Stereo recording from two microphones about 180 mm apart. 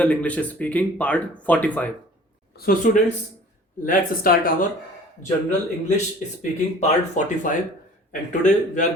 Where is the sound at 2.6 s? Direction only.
45° left (ahead or behind).